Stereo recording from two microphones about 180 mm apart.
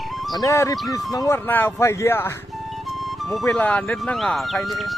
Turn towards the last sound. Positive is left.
turn(degrees=0)  # may be behind; listen again after turning